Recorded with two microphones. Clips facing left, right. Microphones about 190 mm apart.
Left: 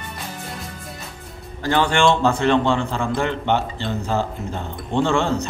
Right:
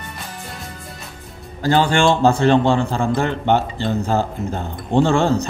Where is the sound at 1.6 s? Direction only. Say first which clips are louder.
Right 2 dB; 35° right (ahead or behind).